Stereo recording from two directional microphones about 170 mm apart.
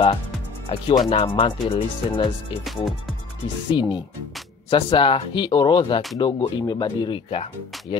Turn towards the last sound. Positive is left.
turn(degrees=35)  # may be behind; listen again after turning